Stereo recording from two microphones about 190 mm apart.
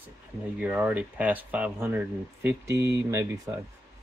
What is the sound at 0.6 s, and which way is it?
Speech, 10° right (ahead or behind).